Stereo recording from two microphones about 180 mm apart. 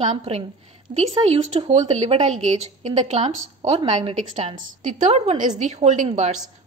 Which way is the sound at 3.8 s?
25° right (ahead or behind).